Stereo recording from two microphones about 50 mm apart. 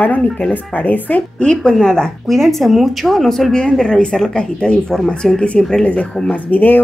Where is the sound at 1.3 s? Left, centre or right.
Centre.